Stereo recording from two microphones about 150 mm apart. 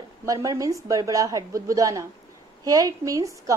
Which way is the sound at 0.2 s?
20° right (ahead or behind).